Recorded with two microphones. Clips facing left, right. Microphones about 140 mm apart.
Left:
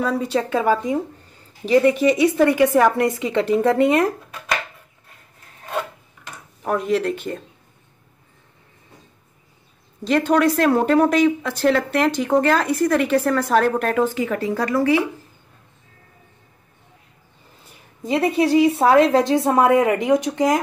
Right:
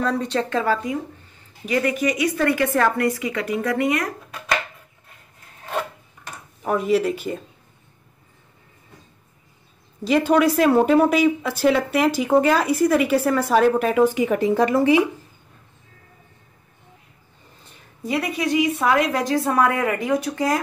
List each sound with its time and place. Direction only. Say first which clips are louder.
0.0 s speech: left 1 dB; 10° left (ahead or behind)
1.7 s a woman's voice: left 6 dB; 25° left (ahead or behind)
6.6 s speech: right 1 dB; centre (ahead or behind)
10.0 s speech: even; 5° right (ahead or behind)
18.0 s a woman's voice: left 5 dB; 25° left (ahead or behind)